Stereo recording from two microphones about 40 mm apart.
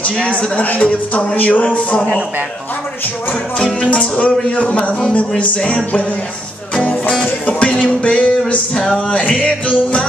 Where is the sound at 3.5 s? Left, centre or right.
Left.